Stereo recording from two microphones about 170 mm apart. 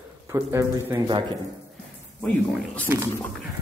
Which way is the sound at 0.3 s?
15° right (ahead or behind).